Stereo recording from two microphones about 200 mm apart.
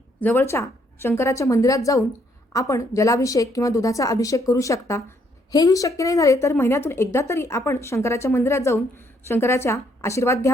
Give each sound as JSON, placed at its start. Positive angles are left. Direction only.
{"t": 0.2, "sound": "a woman's voice", "side_deg": 10}